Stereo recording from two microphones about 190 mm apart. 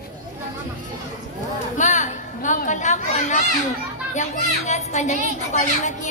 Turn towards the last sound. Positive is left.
turn(degrees=40)  # may be behind; listen again after turning